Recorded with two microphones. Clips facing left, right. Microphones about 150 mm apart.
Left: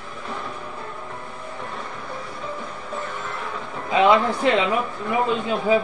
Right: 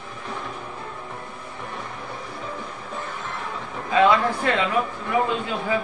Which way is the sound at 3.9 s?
20° left (ahead or behind).